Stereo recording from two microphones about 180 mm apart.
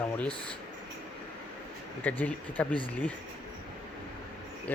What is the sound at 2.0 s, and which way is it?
Speech, 10° left (ahead or behind).